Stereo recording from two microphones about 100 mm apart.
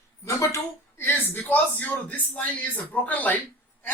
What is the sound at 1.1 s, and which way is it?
Speech, 20° left (ahead or behind).